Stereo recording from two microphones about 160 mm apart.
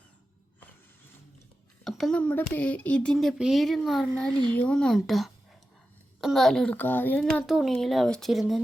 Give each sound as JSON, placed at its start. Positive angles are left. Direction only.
{"t": 1.8, "sound": "speech", "side_deg": 0}